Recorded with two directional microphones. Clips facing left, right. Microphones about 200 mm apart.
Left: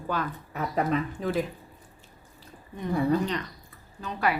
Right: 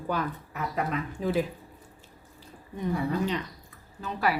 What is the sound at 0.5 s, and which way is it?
Speech, 30° left (ahead or behind).